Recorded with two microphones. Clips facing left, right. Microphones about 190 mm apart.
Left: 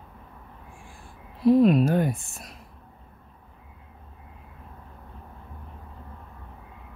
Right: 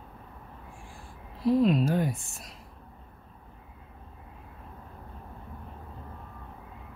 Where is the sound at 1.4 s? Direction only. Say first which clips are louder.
Left 5 dB; 55° left (ahead or behind).